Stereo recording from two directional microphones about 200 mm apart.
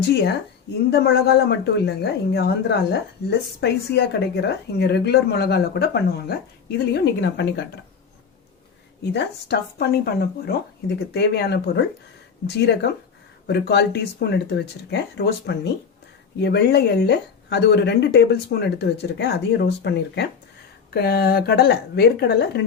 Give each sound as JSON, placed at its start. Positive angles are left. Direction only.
{"t": 0.9, "sound": "a woman's voice", "side_deg": 55}
{"t": 9.1, "sound": "a woman's voice", "side_deg": 55}